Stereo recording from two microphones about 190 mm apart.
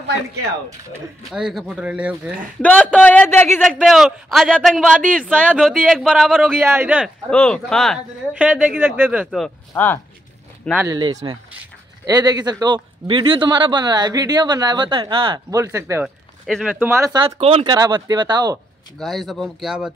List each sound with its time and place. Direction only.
1.3 s speech: centre (ahead or behind)
2.6 s speech: 5° left (ahead or behind)
6.6 s speech: 10° right (ahead or behind)
7.2 s speech: 5° left (ahead or behind)
10.8 s a man's voice: 20° right (ahead or behind)
16.4 s speech: centre (ahead or behind)
16.8 s speech: 15° right (ahead or behind)
17.4 s a man's voice: 30° right (ahead or behind)
18.9 s speech: centre (ahead or behind)